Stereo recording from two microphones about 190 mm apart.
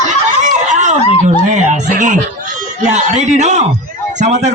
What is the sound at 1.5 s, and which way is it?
Speech, 40° right (ahead or behind).